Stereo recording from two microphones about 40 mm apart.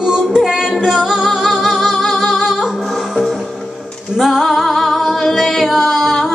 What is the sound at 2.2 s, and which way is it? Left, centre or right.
Singing, centre.